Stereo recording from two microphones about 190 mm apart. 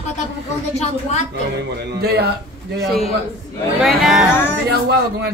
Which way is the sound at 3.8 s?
Centre (ahead or behind).